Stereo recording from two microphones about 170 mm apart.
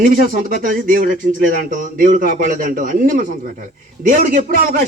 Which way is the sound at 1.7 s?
50° right (ahead or behind).